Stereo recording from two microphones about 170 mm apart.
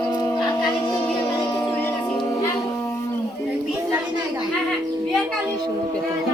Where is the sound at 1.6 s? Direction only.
10° left (ahead or behind).